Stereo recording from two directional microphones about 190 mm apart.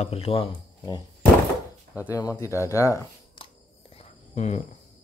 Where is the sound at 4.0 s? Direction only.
40° left (ahead or behind).